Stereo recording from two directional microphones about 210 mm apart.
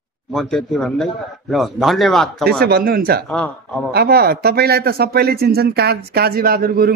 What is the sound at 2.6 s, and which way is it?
Speech, 45° right (ahead or behind).